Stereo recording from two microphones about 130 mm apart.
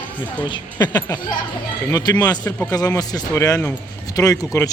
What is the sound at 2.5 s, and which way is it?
Speech, 10° left (ahead or behind).